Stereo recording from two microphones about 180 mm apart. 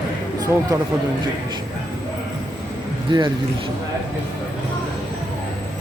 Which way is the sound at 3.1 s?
25° right (ahead or behind).